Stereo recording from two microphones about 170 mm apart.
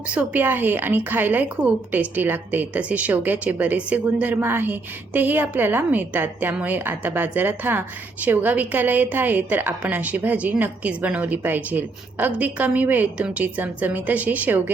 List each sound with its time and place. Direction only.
0.1 s a woman's voice: 10° right (ahead or behind)